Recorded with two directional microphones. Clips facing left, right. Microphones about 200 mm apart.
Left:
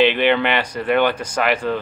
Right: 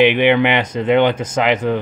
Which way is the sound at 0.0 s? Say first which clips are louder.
Right 3 dB; 15° right (ahead or behind).